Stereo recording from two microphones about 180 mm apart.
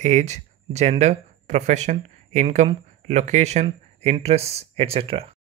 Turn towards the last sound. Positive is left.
turn(degrees=-30)  # may be behind; listen again after turning